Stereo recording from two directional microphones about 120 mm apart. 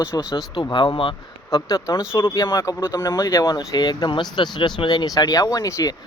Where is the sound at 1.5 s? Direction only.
30° left (ahead or behind).